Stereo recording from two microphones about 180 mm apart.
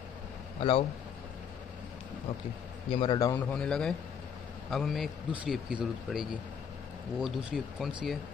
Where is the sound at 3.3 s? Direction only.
5° left (ahead or behind).